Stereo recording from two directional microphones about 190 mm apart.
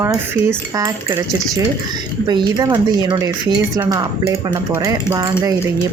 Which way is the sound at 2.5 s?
20° right (ahead or behind).